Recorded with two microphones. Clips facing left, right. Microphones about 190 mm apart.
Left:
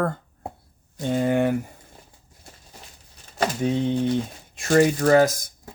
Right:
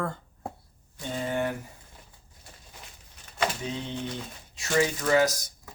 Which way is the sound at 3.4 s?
55° left (ahead or behind).